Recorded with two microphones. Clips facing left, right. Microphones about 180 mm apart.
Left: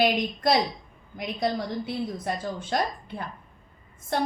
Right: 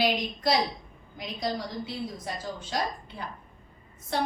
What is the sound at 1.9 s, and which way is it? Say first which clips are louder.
A woman's voice: left 5 dB; 55° left (ahead or behind).